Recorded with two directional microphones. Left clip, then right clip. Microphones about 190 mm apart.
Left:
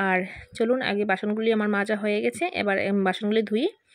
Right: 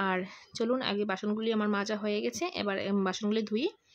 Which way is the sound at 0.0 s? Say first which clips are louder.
Left 7 dB; 15° left (ahead or behind).